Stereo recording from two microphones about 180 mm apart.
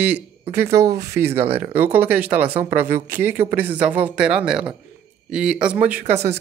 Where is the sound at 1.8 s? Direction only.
10° right (ahead or behind).